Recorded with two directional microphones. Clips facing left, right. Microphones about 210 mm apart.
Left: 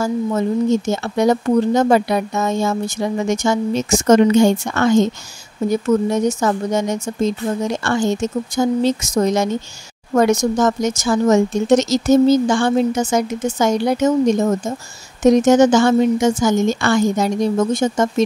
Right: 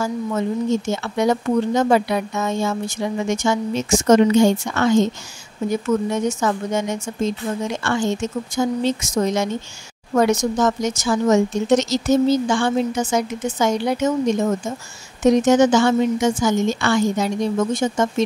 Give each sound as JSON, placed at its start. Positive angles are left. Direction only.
{"t": 0.8, "sound": "speech", "side_deg": 40}